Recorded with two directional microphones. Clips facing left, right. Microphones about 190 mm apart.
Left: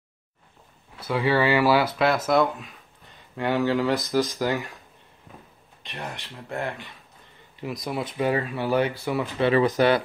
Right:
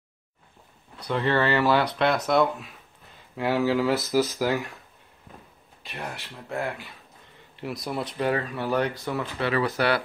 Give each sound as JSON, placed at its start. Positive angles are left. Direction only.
{"t": 0.9, "sound": "speech", "side_deg": 5}
{"t": 5.8, "sound": "speech", "side_deg": -5}
{"t": 7.9, "sound": "speech", "side_deg": 5}
{"t": 9.4, "sound": "speech", "side_deg": 20}